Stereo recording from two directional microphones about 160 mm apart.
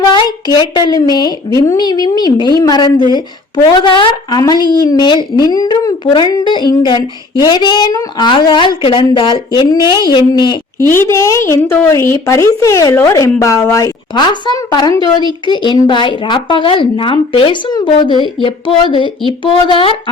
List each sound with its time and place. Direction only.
0.0 s a woman's voice: 25° left (ahead or behind)
10.8 s speech: 15° left (ahead or behind); by 20.0 s 35° left (ahead or behind)